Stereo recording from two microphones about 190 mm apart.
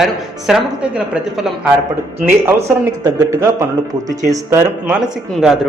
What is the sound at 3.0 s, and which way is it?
Speech, 15° right (ahead or behind).